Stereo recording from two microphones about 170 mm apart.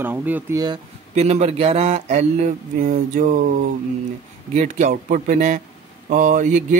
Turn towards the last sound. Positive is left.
turn(degrees=-50)  # may be behind; listen again after turning